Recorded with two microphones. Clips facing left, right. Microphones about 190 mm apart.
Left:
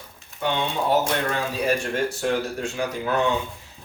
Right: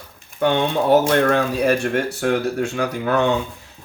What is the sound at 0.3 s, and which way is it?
Speech, 60° right (ahead or behind).